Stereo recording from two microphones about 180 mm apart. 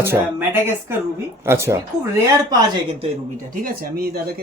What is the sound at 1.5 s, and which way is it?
Speech, 15° right (ahead or behind).